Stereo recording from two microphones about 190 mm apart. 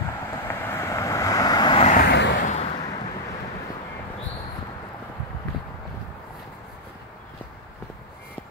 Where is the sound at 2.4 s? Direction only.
35° left (ahead or behind).